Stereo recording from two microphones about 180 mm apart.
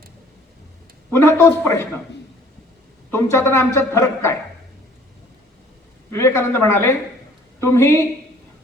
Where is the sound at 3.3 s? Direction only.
15° left (ahead or behind).